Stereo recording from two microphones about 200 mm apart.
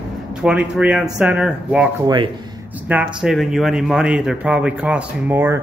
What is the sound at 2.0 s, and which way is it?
Speech, 25° right (ahead or behind).